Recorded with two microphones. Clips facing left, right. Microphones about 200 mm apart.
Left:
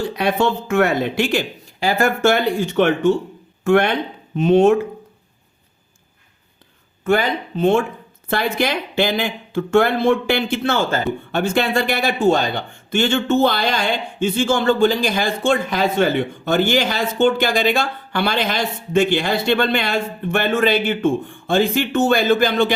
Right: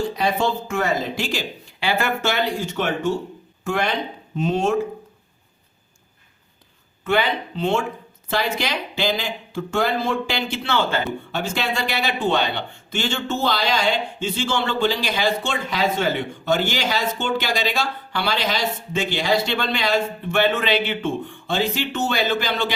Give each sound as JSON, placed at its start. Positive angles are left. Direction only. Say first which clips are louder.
{"t": 0.0, "sound": "speech", "louder": "left 3 dB", "side_deg": 65}
{"t": 1.8, "sound": "speech", "louder": "left 6 dB", "side_deg": 45}
{"t": 7.0, "sound": "speech", "louder": "left 3 dB", "side_deg": 45}